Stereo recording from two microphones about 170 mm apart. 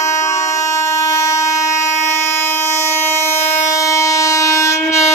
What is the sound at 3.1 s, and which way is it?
Train, 15° left (ahead or behind).